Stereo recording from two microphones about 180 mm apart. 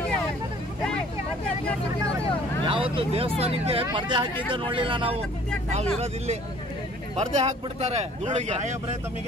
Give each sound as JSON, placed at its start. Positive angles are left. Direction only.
{"t": 2.6, "sound": "speech", "side_deg": -30}